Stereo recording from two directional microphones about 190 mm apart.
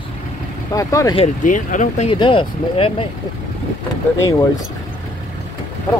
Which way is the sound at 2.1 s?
25° left (ahead or behind).